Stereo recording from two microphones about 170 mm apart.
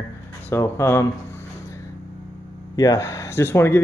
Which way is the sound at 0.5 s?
15° left (ahead or behind).